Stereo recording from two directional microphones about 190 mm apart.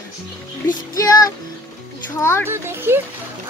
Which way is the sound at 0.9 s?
20° left (ahead or behind).